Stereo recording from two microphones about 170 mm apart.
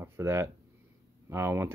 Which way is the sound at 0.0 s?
15° right (ahead or behind).